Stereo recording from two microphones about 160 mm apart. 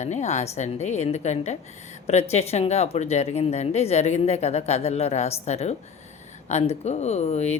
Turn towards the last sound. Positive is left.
turn(degrees=40)  # may be behind; listen again after turning